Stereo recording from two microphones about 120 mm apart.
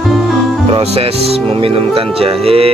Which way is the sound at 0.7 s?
55° right (ahead or behind).